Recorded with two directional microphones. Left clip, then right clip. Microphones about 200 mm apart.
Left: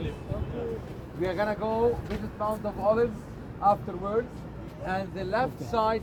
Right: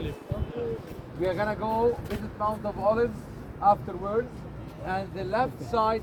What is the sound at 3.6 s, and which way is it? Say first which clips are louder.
Speech: right 2 dB; centre (ahead or behind).